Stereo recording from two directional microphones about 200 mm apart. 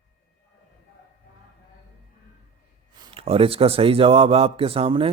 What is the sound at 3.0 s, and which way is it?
Speech, 25° right (ahead or behind).